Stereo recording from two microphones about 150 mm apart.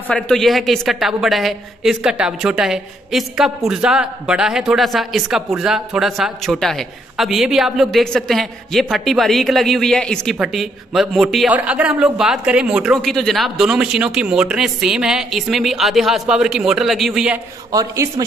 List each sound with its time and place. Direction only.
0.1 s a woman's voice: 5° left (ahead or behind)
17.6 s speech: 20° right (ahead or behind)